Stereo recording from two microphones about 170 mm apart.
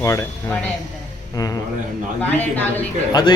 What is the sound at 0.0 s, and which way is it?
Speech, 20° left (ahead or behind).